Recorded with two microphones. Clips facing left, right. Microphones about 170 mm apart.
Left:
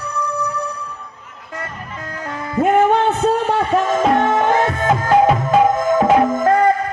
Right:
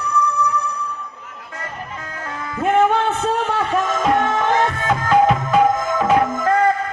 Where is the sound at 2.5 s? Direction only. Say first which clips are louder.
Left 3 dB; 40° left (ahead or behind).